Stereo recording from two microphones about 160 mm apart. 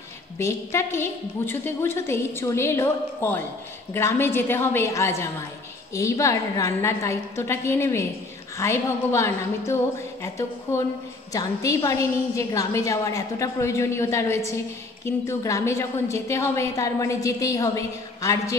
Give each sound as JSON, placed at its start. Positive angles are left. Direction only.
{"t": 0.4, "sound": "a woman's voice", "side_deg": 15}